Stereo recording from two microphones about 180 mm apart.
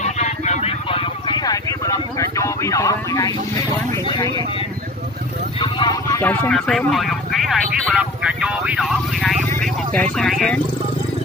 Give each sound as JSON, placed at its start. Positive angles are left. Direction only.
{"t": 0.0, "sound": "vehicle", "side_deg": 40}
{"t": 1.5, "sound": "vehicle", "side_deg": 20}
{"t": 5.6, "sound": "a sound", "side_deg": 25}
{"t": 6.2, "sound": "vehicle", "side_deg": 10}
{"t": 9.6, "sound": "speech", "side_deg": 5}